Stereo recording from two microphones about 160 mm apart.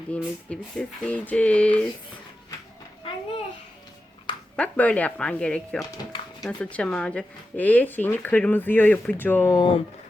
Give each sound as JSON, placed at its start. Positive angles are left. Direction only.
{"t": 0.1, "sound": "speech", "side_deg": 10}
{"t": 4.5, "sound": "speech", "side_deg": 10}
{"t": 9.6, "sound": "speech", "side_deg": 30}